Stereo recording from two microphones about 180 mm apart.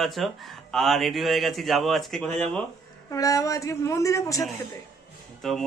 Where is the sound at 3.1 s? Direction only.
20° left (ahead or behind).